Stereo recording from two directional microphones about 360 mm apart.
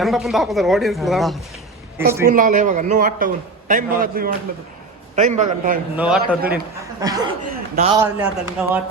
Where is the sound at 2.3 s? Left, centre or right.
Right.